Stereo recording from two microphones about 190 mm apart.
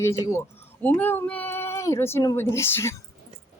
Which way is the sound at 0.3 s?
10° left (ahead or behind).